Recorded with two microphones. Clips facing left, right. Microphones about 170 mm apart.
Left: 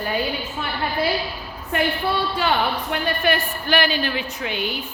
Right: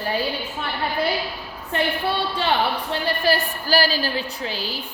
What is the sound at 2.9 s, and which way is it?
A woman's voice, 35° right (ahead or behind).